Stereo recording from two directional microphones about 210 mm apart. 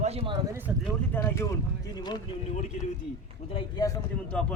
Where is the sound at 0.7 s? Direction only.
5° right (ahead or behind).